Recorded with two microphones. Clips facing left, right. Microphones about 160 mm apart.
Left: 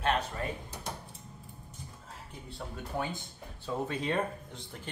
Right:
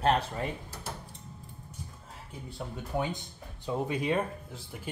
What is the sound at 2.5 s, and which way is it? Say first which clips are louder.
Speech: right 3 dB; 20° right (ahead or behind).